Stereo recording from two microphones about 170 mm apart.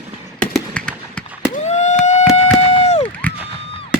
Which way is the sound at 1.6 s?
40° left (ahead or behind).